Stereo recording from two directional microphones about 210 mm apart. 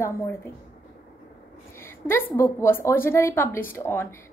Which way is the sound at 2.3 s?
15° left (ahead or behind).